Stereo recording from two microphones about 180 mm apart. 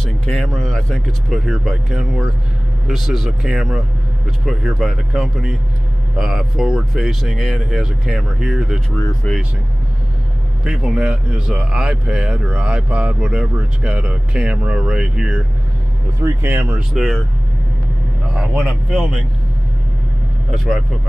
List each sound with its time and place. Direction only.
0.0 s speech: 5° left (ahead or behind)
10.6 s speech: 5° right (ahead or behind)
18.3 s speech: 5° right (ahead or behind)
20.5 s speech: centre (ahead or behind)